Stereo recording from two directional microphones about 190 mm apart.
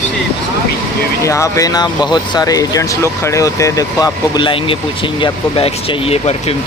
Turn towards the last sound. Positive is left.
turn(degrees=35)  # may be behind; listen again after turning